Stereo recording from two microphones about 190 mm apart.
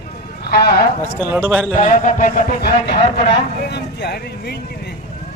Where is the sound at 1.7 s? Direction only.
40° left (ahead or behind); by 4.9 s 60° left (ahead or behind).